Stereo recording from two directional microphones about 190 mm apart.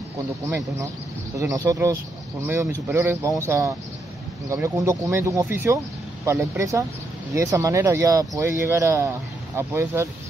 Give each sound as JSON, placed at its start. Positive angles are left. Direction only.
{"t": 0.5, "sound": "speech", "side_deg": -15}